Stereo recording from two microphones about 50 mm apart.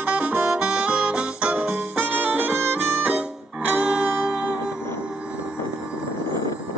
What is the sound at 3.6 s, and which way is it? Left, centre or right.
Music, centre.